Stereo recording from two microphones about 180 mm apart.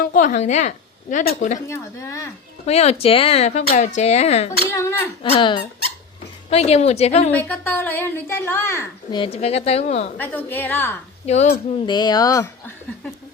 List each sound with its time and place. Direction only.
0.0 s a woman's voice: 45° left (ahead or behind)
1.6 s a woman's voice: 15° left (ahead or behind)
2.6 s speech: 35° left (ahead or behind)
4.6 s a woman's voice: 15° left (ahead or behind)
5.2 s speech: 30° left (ahead or behind)
7.3 s a woman's voice: 10° left (ahead or behind)
9.1 s speech: 30° left (ahead or behind)
10.2 s a woman's voice: 10° left (ahead or behind)
11.3 s speech: 40° left (ahead or behind)
11.9 s speech: 25° left (ahead or behind)